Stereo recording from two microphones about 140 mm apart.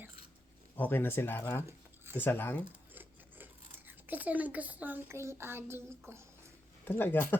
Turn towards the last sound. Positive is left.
turn(degrees=15)  # may be behind; listen again after turning